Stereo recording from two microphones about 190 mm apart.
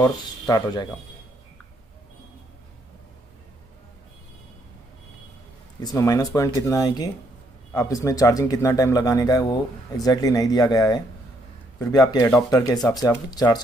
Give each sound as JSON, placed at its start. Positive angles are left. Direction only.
{"t": 0.2, "sound": "speech", "side_deg": 20}
{"t": 5.8, "sound": "speech", "side_deg": 20}